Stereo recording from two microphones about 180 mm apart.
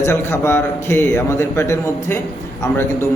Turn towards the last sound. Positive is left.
turn(degrees=15)  # may be behind; listen again after turning